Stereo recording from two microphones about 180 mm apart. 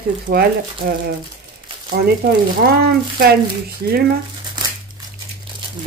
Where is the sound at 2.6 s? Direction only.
55° right (ahead or behind).